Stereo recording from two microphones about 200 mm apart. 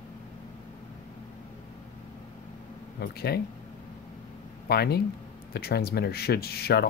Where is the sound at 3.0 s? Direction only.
55° left (ahead or behind).